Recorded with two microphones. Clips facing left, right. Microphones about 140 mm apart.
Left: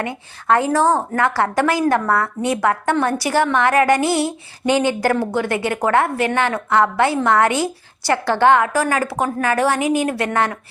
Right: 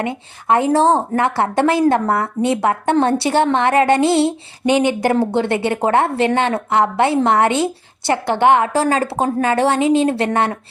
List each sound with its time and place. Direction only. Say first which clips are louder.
0.0 s a woman's voice: right 3 dB; 20° right (ahead or behind)